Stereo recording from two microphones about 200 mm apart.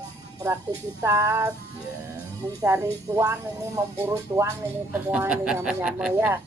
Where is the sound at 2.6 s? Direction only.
15° right (ahead or behind).